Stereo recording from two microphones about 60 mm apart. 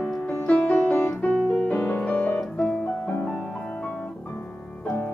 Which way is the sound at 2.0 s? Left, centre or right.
Centre.